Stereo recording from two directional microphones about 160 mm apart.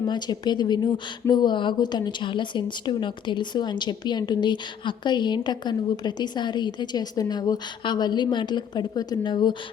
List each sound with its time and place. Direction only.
0.0 s a woman's voice: 25° left (ahead or behind)